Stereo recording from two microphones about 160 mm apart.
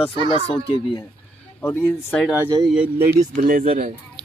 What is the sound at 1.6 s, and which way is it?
Speech, 15° left (ahead or behind).